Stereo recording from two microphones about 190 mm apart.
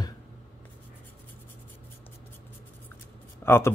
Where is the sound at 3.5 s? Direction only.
10° left (ahead or behind).